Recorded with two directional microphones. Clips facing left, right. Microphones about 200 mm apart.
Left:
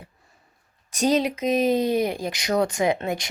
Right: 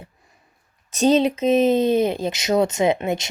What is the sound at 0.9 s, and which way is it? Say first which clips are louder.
Speech: right 4 dB; 25° right (ahead or behind).